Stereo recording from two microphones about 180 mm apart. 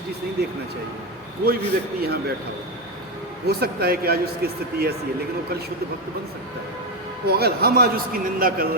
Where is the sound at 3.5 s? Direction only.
60° right (ahead or behind).